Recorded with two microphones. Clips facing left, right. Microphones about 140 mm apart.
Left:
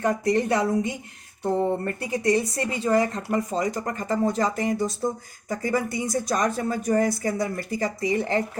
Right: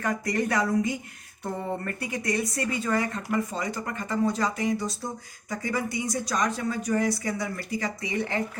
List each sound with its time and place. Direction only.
0.0 s speech: 25° left (ahead or behind)